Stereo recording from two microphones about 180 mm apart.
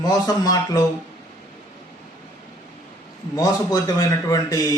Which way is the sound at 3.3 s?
20° left (ahead or behind).